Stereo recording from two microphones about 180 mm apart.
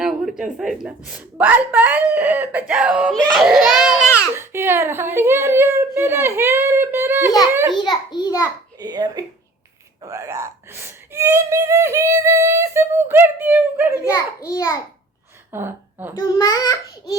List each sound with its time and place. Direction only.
0.0 s a woman's voice: centre (ahead or behind)
4.4 s speech: 15° right (ahead or behind)
7.8 s a child's voice: 25° left (ahead or behind)
8.8 s speech: 20° right (ahead or behind)
14.0 s a child's voice: 15° left (ahead or behind)
15.5 s a woman's voice: 10° right (ahead or behind)
16.2 s a child's voice: 20° left (ahead or behind)